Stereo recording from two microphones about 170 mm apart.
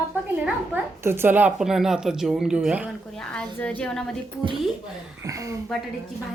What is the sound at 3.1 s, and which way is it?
Speech, 5° left (ahead or behind).